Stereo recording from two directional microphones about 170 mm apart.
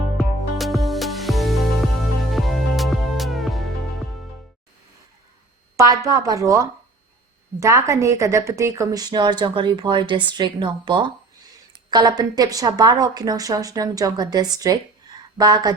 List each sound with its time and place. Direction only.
0.2 s music: centre (ahead or behind)
5.7 s a woman's voice: 20° right (ahead or behind)